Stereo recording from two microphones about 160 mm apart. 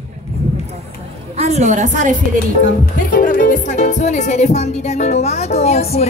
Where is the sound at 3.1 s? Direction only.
55° left (ahead or behind).